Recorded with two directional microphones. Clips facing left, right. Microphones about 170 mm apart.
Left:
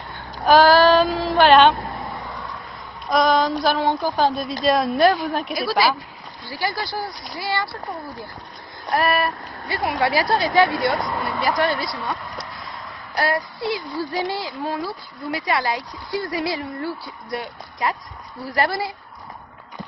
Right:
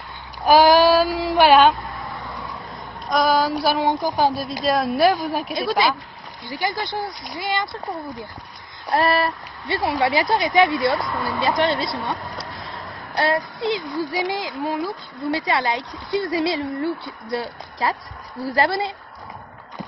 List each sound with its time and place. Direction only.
0.5 s child singing: 10° right (ahead or behind)
3.1 s a sound: 5° right (ahead or behind)
4.4 s a woman's voice: centre (ahead or behind)
5.6 s a woman's voice: 20° right (ahead or behind)
8.9 s a woman's voice: 30° right (ahead or behind)
17.8 s a woman's voice: 30° right (ahead or behind)